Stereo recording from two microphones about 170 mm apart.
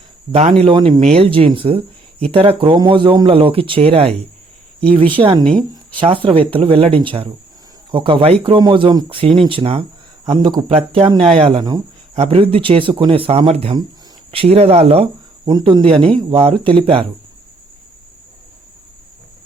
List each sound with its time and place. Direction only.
0.3 s speech: 40° right (ahead or behind)
0.6 s speech: 30° right (ahead or behind)
5.7 s a sound: 30° right (ahead or behind)
6.2 s speech: 30° right (ahead or behind)